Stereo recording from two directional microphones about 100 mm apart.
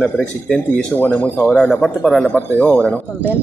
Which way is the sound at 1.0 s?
20° left (ahead or behind).